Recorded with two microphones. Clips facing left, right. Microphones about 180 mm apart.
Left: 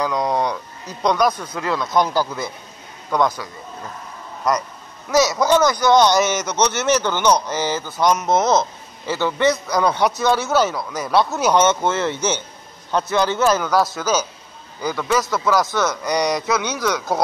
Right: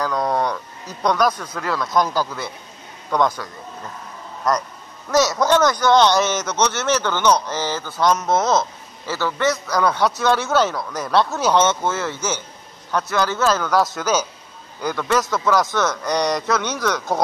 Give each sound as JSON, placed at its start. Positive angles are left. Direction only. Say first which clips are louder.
{"t": 0.0, "sound": "livestock", "louder": "left 1 dB", "side_deg": 15}
{"t": 1.0, "sound": "a man's voice", "louder": "left 1 dB", "side_deg": 20}
{"t": 1.8, "sound": "speech", "louder": "left 1 dB", "side_deg": 0}
{"t": 5.1, "sound": "a man's voice", "louder": "left 1 dB", "side_deg": 10}